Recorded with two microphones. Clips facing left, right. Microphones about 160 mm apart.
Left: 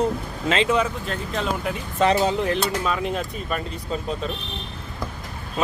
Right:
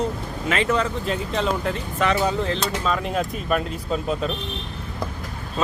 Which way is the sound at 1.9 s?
30° left (ahead or behind).